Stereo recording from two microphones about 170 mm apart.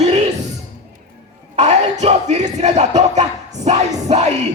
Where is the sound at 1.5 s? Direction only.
40° right (ahead or behind).